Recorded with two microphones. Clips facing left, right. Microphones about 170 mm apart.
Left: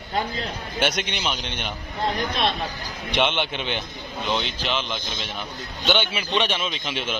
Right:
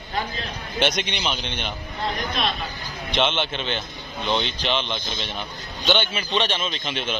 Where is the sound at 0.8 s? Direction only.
10° left (ahead or behind).